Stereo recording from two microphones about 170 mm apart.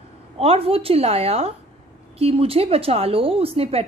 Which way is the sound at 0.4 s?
35° right (ahead or behind).